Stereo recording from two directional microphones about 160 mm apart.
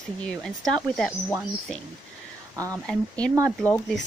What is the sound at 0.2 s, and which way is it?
Speech, 5° left (ahead or behind).